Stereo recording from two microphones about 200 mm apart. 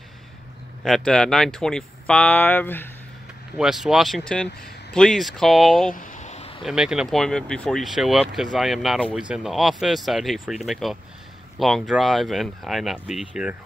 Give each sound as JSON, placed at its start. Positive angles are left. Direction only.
{"t": 0.8, "sound": "speech", "side_deg": 0}
{"t": 3.5, "sound": "speech", "side_deg": 0}
{"t": 5.9, "sound": "a sound", "side_deg": 40}
{"t": 6.6, "sound": "speech", "side_deg": -5}